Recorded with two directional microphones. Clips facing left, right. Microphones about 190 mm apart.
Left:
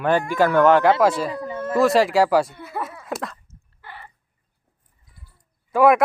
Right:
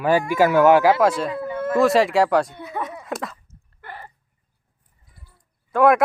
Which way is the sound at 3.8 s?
45° right (ahead or behind).